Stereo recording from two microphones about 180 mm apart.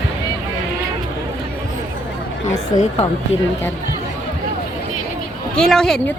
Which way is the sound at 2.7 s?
40° left (ahead or behind).